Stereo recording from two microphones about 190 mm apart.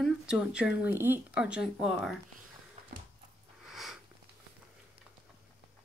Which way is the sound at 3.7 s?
Centre (ahead or behind).